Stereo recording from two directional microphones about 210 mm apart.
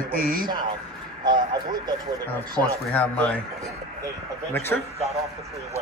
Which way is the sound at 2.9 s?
5° left (ahead or behind).